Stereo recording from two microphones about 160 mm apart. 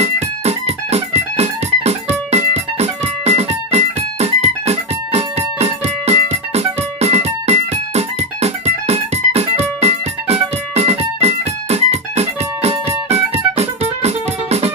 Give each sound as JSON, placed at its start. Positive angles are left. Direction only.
{"t": 0.0, "sound": "music", "side_deg": -40}